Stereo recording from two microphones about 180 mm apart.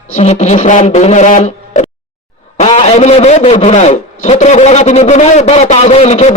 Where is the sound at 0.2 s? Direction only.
40° left (ahead or behind).